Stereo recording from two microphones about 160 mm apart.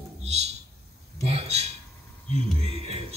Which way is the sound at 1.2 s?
40° right (ahead or behind).